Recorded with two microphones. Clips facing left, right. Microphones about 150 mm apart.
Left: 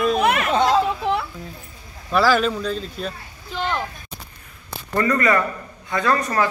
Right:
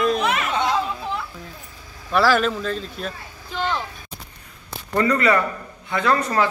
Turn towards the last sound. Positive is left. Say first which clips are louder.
# even
turn(degrees=-20)  # may be behind; listen again after turning